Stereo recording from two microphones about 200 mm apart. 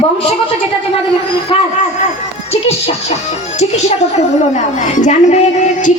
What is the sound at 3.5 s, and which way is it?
Music, 35° left (ahead or behind).